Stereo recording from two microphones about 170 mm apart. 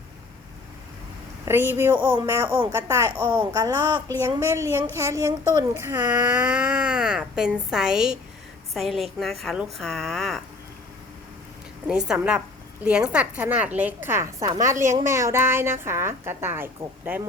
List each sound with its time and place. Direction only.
1.5 s a woman's voice: 15° right (ahead or behind)
2.0 s speech: 30° right (ahead or behind)
2.2 s a woman's voice: 15° right (ahead or behind); by 10.4 s centre (ahead or behind)
11.9 s a woman's voice: 5° right (ahead or behind)